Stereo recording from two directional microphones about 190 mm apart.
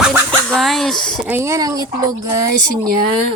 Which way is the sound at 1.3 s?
15° right (ahead or behind).